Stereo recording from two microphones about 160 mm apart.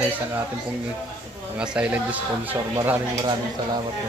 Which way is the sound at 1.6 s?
5° right (ahead or behind).